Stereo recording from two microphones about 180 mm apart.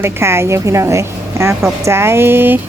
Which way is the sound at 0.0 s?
15° right (ahead or behind).